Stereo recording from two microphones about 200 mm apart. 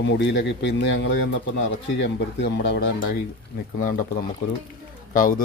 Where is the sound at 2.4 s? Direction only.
60° left (ahead or behind).